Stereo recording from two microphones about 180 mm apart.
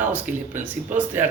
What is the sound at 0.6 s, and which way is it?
Speech, 10° right (ahead or behind).